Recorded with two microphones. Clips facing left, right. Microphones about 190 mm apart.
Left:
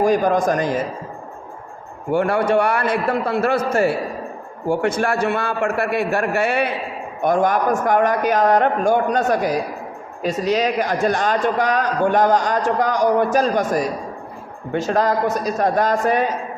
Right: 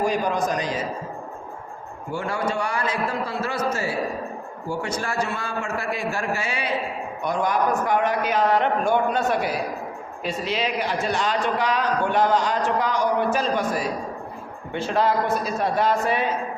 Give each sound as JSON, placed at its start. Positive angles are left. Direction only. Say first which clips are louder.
{"t": 0.0, "sound": "a man's voice", "louder": "left 6 dB", "side_deg": 45}
{"t": 2.0, "sound": "a man's voice", "louder": "left 9 dB", "side_deg": 60}
{"t": 7.2, "sound": "a man's voice", "louder": "left 6 dB", "side_deg": 50}